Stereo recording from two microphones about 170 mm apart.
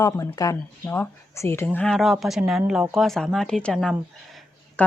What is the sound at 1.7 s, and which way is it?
Speech, 5° left (ahead or behind).